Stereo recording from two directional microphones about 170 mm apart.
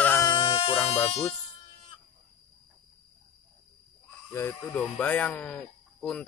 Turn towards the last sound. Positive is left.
turn(degrees=5)  # may be behind; listen again after turning